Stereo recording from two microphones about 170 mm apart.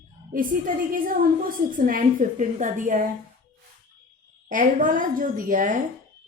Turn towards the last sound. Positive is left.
turn(degrees=-50)  # may be behind; listen again after turning